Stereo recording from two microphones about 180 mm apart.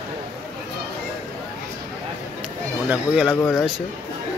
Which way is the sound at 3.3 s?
15° left (ahead or behind).